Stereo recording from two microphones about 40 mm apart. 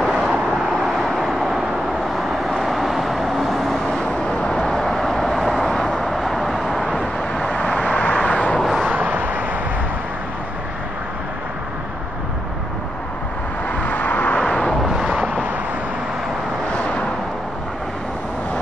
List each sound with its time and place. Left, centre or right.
0.0 s vehicle: centre
3.7 s vehicle: centre
7.4 s vehicle: left
8.9 s vehicle: right
13.7 s vehicle: left